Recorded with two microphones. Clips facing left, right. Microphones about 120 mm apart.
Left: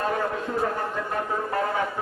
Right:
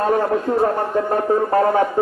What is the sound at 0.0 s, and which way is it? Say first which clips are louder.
A man's voice: right 9 dB; 40° right (ahead or behind).